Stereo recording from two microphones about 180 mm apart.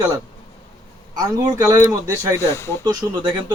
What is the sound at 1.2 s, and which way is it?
Speech, 20° right (ahead or behind).